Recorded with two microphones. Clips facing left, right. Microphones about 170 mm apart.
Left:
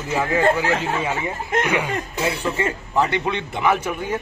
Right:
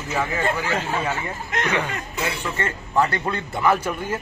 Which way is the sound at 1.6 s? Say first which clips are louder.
Left 2 dB; 10° left (ahead or behind).